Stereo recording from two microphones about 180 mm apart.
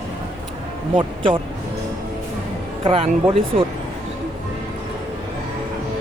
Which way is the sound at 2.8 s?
35° right (ahead or behind).